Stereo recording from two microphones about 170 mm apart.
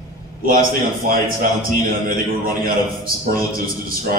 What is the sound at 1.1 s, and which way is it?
A man's voice, 55° right (ahead or behind).